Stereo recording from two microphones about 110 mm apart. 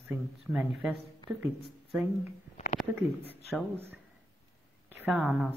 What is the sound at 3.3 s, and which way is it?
Speech, 20° right (ahead or behind).